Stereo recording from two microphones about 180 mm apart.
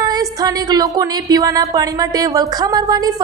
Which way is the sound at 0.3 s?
20° right (ahead or behind).